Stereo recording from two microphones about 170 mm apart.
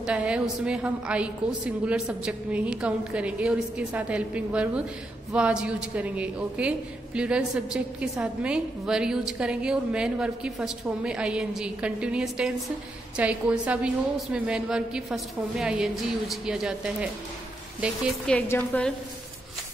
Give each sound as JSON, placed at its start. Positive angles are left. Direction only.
{"t": 0.0, "sound": "a woman's voice", "side_deg": -5}
{"t": 18.2, "sound": "a woman's voice", "side_deg": 10}